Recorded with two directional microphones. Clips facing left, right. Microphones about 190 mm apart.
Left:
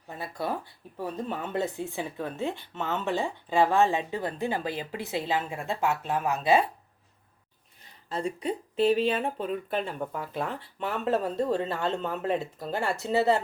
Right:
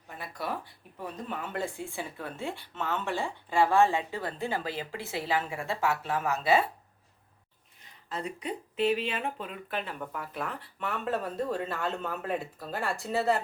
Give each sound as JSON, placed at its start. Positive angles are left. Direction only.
{"t": 0.2, "sound": "speech", "side_deg": 25}
{"t": 8.1, "sound": "speech", "side_deg": 30}